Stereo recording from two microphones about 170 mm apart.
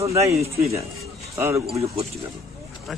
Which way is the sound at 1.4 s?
15° right (ahead or behind).